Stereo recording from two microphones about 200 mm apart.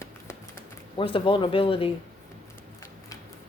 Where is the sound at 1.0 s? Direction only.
25° left (ahead or behind).